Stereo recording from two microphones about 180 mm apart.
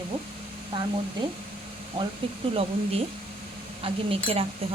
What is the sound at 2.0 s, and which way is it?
A woman's voice, 25° right (ahead or behind).